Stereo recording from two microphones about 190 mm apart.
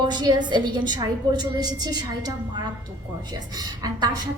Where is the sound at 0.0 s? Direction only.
25° right (ahead or behind).